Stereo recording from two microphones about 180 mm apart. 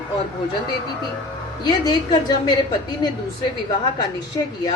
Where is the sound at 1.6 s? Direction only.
20° left (ahead or behind).